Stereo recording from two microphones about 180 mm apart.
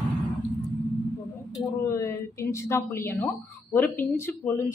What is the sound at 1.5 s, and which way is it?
A woman's voice, 15° left (ahead or behind).